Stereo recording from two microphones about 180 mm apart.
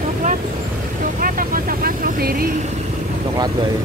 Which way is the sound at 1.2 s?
50° right (ahead or behind).